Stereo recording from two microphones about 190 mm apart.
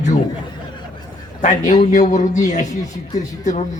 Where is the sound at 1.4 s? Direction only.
40° left (ahead or behind).